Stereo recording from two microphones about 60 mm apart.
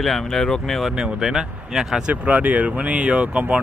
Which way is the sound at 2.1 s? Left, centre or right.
Right.